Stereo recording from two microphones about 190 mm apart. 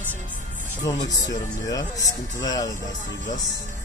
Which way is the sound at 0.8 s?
20° left (ahead or behind).